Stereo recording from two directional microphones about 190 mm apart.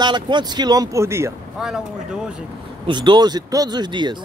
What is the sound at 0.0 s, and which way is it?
Speech, 25° right (ahead or behind).